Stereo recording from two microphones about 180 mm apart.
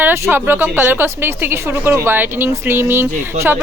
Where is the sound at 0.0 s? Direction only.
10° right (ahead or behind).